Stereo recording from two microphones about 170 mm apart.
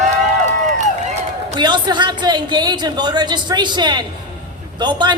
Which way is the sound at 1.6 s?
25° right (ahead or behind).